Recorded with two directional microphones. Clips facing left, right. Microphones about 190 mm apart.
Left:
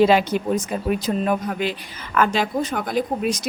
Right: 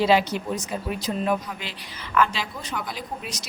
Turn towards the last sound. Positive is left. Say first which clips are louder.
# left 12 dB
turn(degrees=50)  # may be behind; listen again after turning